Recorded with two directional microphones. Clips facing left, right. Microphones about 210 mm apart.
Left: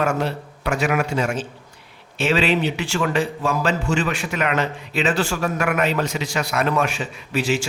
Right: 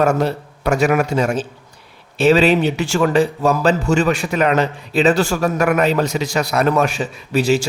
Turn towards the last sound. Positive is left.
turn(degrees=-40)  # may be behind; listen again after turning